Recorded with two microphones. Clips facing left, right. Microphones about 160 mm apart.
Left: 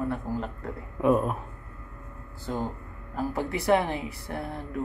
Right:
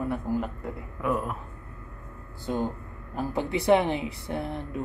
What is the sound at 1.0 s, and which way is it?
Speech, 20° left (ahead or behind).